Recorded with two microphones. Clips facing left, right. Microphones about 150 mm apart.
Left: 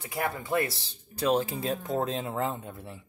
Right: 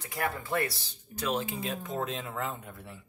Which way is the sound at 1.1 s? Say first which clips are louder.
Left 6 dB; 35° left (ahead or behind).